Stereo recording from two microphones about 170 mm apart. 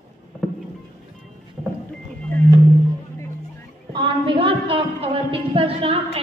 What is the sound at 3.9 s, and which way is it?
A woman's voice, 30° right (ahead or behind).